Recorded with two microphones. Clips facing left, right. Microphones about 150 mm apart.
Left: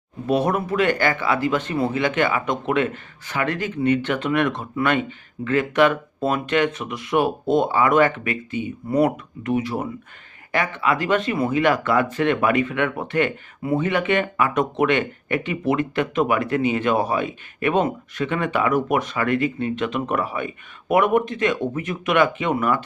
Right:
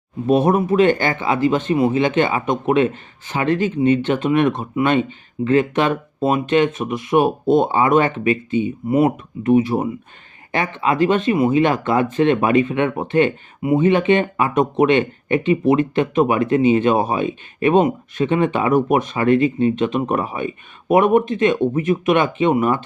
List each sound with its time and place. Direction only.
0.3 s speech: 20° right (ahead or behind)